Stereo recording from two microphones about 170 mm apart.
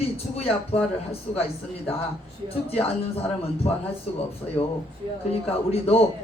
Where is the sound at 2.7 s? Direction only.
35° left (ahead or behind).